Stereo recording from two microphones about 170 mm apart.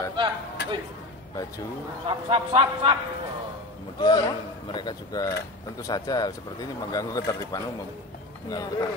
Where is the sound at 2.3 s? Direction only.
30° right (ahead or behind).